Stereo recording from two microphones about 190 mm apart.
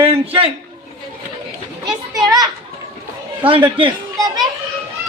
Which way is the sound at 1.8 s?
20° right (ahead or behind).